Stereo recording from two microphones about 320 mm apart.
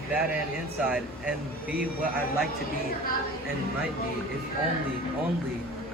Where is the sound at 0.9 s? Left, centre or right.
Centre.